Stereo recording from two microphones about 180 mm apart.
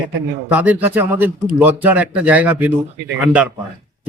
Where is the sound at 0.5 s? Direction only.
10° right (ahead or behind).